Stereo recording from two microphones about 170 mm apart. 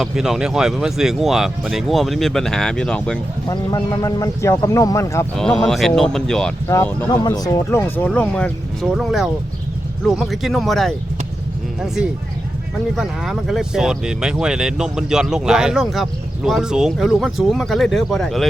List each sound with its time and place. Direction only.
0.0 s speech: 5° right (ahead or behind)
3.5 s speech: 20° left (ahead or behind)
5.4 s speech: 5° left (ahead or behind)
6.7 s speech: 15° left (ahead or behind)
13.0 s speech: centre (ahead or behind)